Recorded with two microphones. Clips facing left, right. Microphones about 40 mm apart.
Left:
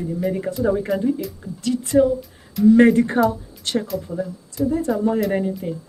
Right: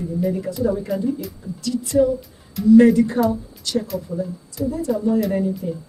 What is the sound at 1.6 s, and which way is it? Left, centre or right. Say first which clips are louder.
Speech: left 1 dB; left.